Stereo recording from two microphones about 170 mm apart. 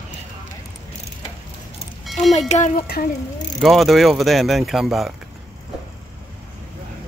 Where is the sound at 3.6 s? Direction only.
Centre (ahead or behind).